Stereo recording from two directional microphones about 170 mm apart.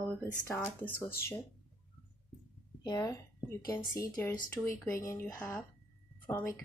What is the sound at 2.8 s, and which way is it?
Speech, 20° left (ahead or behind).